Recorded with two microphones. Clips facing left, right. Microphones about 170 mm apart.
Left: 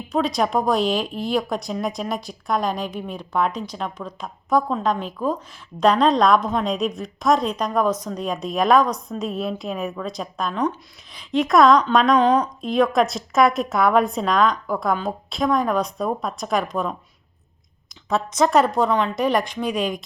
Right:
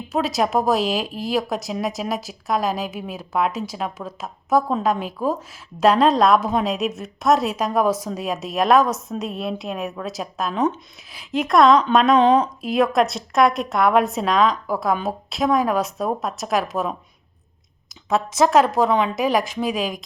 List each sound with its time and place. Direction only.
0.1 s a woman's voice: 5° right (ahead or behind)
12.1 s a woman's voice: 25° right (ahead or behind)
12.6 s a woman's voice: 5° right (ahead or behind)
18.1 s a woman's voice: 5° right (ahead or behind)